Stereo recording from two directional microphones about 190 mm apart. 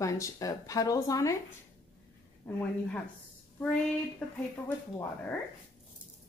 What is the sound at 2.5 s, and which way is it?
Speech, 10° left (ahead or behind).